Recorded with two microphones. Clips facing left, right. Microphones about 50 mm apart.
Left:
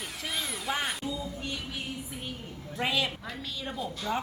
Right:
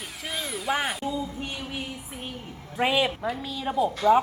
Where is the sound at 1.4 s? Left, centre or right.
Right.